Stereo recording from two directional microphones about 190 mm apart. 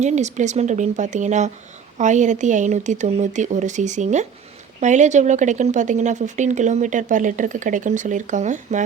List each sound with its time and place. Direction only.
0.0 s speech: 40° right (ahead or behind)